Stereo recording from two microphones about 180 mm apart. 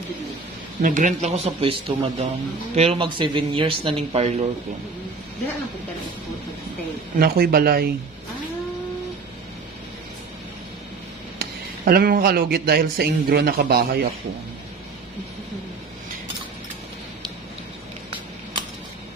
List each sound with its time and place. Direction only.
0.8 s speech: 45° right (ahead or behind)
7.2 s a man's voice: 55° right (ahead or behind)
11.3 s speech: 55° right (ahead or behind)